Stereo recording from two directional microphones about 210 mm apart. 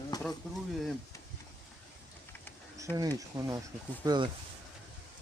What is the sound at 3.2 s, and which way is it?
Speech, 15° right (ahead or behind).